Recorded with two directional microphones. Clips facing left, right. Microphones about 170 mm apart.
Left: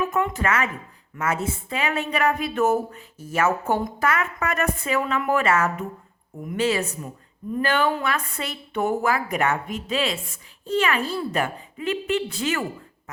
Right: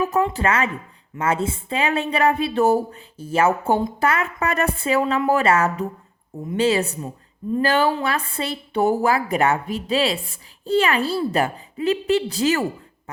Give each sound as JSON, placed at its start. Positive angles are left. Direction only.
{"t": 0.0, "sound": "a woman's voice", "side_deg": -35}